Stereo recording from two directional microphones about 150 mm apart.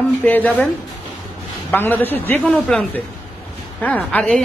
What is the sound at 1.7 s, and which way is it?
A man's voice, 15° left (ahead or behind).